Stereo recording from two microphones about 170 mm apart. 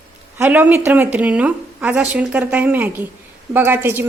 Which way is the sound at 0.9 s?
10° right (ahead or behind).